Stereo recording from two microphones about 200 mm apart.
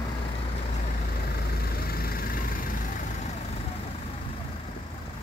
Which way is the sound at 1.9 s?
50° left (ahead or behind).